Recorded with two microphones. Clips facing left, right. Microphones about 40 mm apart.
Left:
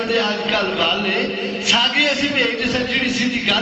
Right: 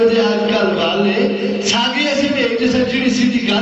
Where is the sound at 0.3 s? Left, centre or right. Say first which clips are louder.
Right 5 dB; left.